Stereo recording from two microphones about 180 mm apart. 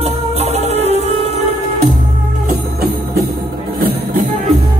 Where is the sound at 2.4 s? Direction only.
60° right (ahead or behind).